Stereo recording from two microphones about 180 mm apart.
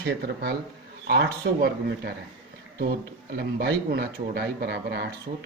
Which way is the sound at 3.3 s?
60° right (ahead or behind).